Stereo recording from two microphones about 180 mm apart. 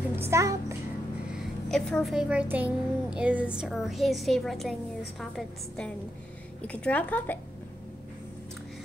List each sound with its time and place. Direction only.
0.1 s a child's voice: 15° right (ahead or behind)
1.3 s a child's voice: centre (ahead or behind)